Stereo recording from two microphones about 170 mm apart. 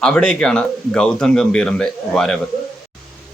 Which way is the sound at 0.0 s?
5° left (ahead or behind).